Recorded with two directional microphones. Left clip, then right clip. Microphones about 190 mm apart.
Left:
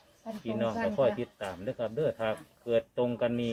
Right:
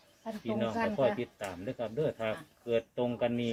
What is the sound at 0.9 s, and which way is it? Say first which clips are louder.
Speech: left 2 dB; 30° left (ahead or behind).